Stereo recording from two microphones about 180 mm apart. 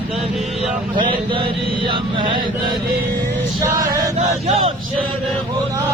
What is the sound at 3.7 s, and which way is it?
Male singing, 50° right (ahead or behind).